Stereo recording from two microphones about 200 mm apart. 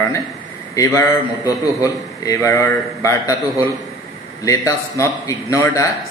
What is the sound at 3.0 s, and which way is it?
A man's voice, 15° left (ahead or behind).